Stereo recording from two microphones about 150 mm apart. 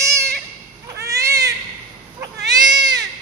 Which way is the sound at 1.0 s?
20° right (ahead or behind).